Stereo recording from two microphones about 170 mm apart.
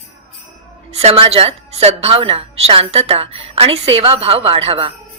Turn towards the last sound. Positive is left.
turn(degrees=-35)  # may be behind; listen again after turning